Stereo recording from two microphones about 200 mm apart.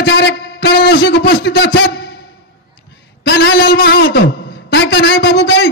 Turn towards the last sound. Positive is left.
turn(degrees=55)  # may be behind; listen again after turning